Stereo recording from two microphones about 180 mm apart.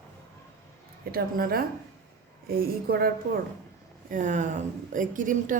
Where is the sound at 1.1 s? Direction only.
55° right (ahead or behind).